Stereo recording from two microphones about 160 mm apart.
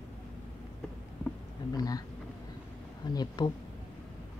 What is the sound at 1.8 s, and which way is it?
Speech, 25° left (ahead or behind).